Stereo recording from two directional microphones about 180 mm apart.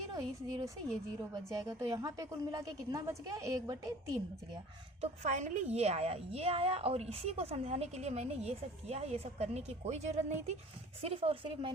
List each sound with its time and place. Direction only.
0.1 s a sound: 20° right (ahead or behind)
1.5 s a woman's voice: 20° right (ahead or behind)
4.9 s a woman's voice: 40° right (ahead or behind)